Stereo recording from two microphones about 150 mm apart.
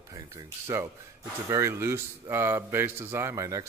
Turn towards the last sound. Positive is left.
turn(degrees=-20)  # may be behind; listen again after turning